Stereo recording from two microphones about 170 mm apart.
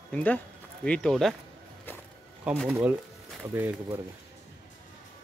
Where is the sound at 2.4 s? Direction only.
5° right (ahead or behind).